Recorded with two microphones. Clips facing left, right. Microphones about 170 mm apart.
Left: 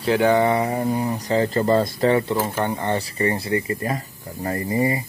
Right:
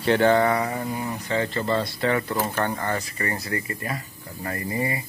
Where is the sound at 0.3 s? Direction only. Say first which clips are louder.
Left 2 dB; 20° left (ahead or behind).